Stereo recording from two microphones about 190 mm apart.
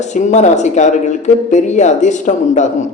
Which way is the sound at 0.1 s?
40° left (ahead or behind).